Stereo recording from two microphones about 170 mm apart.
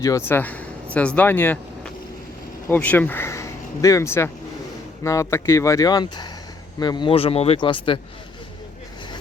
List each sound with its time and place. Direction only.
0.0 s speech: 15° left (ahead or behind)